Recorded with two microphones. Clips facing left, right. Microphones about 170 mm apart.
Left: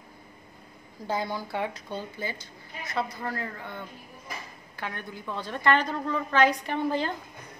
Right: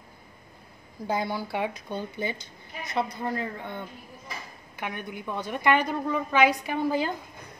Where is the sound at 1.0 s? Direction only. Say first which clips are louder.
Right 2 dB; 15° right (ahead or behind).